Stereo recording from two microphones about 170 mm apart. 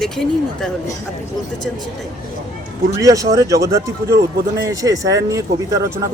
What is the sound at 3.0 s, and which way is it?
Speech, 20° right (ahead or behind).